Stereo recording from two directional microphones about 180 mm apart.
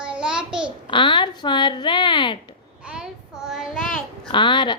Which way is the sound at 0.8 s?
25° left (ahead or behind).